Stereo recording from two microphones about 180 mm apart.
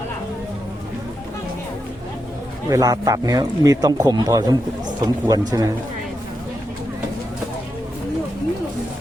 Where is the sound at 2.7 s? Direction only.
20° right (ahead or behind).